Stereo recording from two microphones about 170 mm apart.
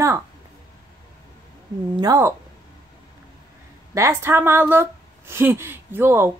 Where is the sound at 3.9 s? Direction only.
15° right (ahead or behind).